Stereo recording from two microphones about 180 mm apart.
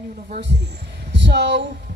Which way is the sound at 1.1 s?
75° right (ahead or behind).